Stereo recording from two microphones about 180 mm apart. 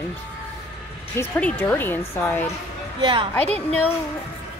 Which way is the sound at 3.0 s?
30° right (ahead or behind).